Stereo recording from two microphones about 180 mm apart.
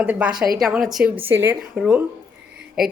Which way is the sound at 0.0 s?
10° right (ahead or behind).